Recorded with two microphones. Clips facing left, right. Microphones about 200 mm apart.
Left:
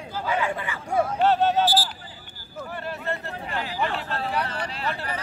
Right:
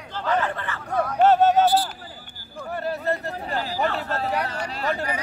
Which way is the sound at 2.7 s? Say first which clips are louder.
Right 6 dB; 40° right (ahead or behind).